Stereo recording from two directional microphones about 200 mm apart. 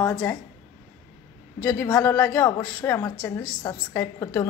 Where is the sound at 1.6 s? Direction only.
15° left (ahead or behind).